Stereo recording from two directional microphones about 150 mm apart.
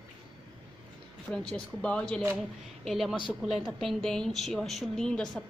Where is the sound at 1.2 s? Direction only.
5° left (ahead or behind).